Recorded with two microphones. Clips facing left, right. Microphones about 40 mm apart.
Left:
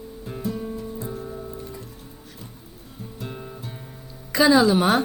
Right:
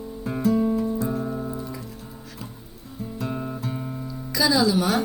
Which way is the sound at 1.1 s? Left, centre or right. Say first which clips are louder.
Right 5 dB; right.